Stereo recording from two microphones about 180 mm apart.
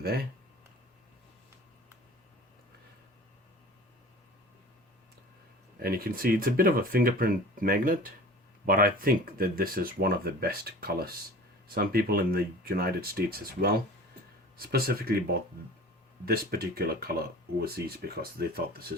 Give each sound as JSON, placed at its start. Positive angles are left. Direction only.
{"t": 5.8, "sound": "speech", "side_deg": -55}